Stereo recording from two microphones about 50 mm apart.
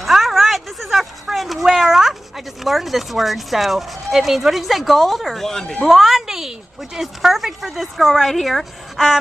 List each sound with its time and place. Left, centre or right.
0.0 s a sound: centre
1.3 s speech: centre
5.9 s speech: centre